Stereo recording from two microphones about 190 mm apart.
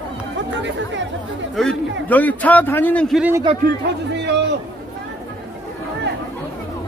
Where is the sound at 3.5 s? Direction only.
25° right (ahead or behind).